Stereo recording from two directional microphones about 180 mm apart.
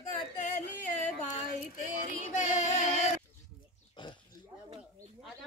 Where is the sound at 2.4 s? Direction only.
40° left (ahead or behind).